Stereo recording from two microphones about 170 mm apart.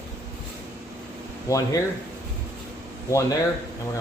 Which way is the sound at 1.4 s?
20° left (ahead or behind).